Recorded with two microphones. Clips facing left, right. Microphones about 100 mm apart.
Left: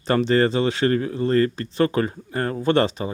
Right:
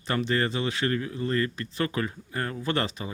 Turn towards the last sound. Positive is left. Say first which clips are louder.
# left 9 dB
turn(degrees=30)  # may be behind; listen again after turning